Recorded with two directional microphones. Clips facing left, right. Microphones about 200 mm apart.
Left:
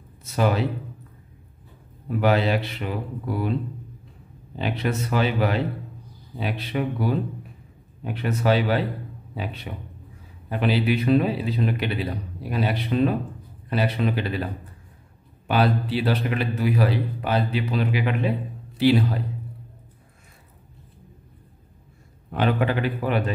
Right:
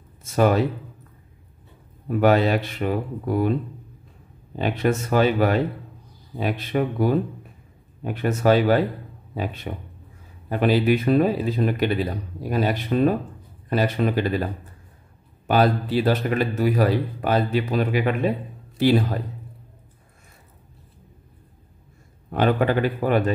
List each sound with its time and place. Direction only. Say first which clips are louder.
0.2 s speech: right 4 dB; 50° right (ahead or behind)
2.1 s speech: right 3 dB; 45° right (ahead or behind)
4.6 s speech: right 4 dB; 45° right (ahead or behind)
15.4 s speech: right 2 dB; 45° right (ahead or behind)
22.3 s speech: right 3 dB; 45° right (ahead or behind)